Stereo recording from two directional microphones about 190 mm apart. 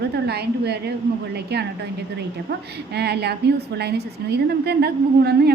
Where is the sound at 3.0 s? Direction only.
60° right (ahead or behind).